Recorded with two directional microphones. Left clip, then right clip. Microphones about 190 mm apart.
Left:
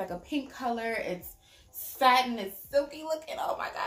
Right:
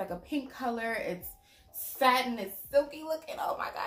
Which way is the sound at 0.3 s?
5° left (ahead or behind).